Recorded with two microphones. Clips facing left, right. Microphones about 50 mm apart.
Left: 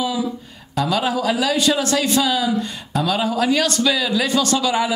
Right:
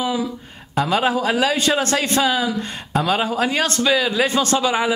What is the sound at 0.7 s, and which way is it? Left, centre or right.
A man's voice, right.